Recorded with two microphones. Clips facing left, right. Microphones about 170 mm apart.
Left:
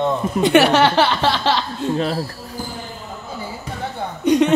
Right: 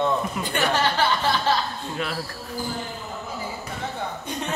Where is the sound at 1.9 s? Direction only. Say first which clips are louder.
Left 7 dB; 35° left (ahead or behind).